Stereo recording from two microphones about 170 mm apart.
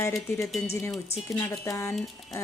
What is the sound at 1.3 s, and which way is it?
Speech, 15° left (ahead or behind).